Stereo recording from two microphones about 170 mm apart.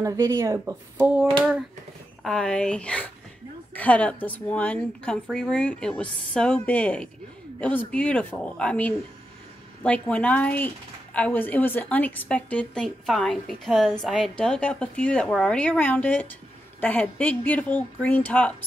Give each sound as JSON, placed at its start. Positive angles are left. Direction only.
{"t": 0.0, "sound": "speech", "side_deg": -15}
{"t": 2.2, "sound": "a woman's voice", "side_deg": 5}